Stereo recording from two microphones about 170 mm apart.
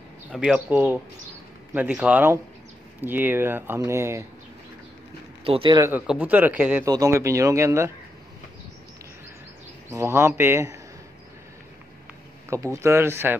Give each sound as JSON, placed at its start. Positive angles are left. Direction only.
{"t": 0.3, "sound": "speech", "side_deg": -5}
{"t": 5.4, "sound": "speech", "side_deg": -30}
{"t": 5.8, "sound": "speech", "side_deg": -10}
{"t": 6.8, "sound": "speech", "side_deg": -20}
{"t": 9.8, "sound": "speech", "side_deg": -15}
{"t": 12.4, "sound": "speech", "side_deg": -15}